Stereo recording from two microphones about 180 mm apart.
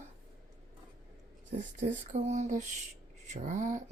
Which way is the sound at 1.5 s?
45° right (ahead or behind).